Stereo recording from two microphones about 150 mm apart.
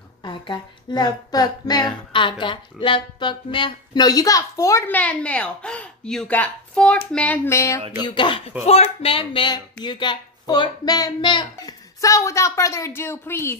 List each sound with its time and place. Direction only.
0.2 s music: 30° left (ahead or behind); by 7.0 s 5° left (ahead or behind)
7.1 s speech: 10° left (ahead or behind)
8.0 s speech: 35° left (ahead or behind)
8.6 s music: 40° left (ahead or behind); by 13.6 s 15° left (ahead or behind)